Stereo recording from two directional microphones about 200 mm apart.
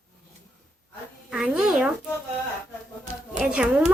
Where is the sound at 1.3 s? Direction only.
5° right (ahead or behind).